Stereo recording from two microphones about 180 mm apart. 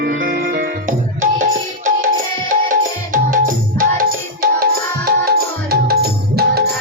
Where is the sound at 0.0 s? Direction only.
60° right (ahead or behind).